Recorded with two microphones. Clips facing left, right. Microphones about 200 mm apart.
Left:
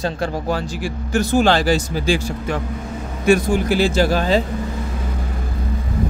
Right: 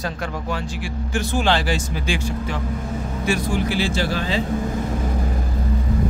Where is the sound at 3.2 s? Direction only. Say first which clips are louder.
Left 7 dB; 50° left (ahead or behind).